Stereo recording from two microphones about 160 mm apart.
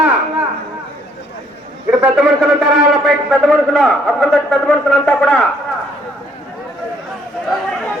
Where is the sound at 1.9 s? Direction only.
5° right (ahead or behind).